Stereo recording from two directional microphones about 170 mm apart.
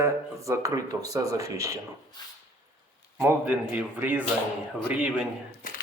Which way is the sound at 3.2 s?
10° right (ahead or behind).